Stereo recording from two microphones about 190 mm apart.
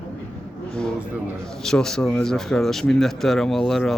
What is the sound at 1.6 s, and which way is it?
A man's voice, centre (ahead or behind).